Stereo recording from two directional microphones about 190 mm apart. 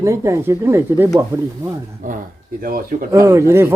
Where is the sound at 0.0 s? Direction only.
15° right (ahead or behind).